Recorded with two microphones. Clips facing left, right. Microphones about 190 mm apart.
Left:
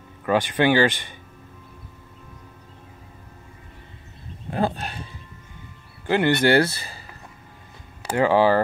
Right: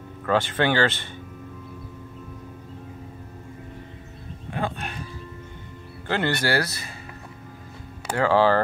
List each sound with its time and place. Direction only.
0.2 s speech: 15° left (ahead or behind)
4.5 s dog: 35° left (ahead or behind)
6.0 s speech: 15° left (ahead or behind); by 7.0 s 30° left (ahead or behind)
8.2 s speech: 15° left (ahead or behind)